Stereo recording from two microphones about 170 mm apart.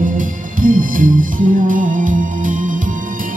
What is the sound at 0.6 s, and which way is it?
Music, 50° right (ahead or behind).